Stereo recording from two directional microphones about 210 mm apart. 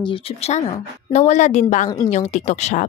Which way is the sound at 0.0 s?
25° left (ahead or behind).